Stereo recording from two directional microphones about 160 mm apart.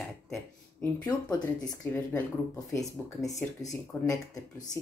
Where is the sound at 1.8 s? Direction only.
15° left (ahead or behind).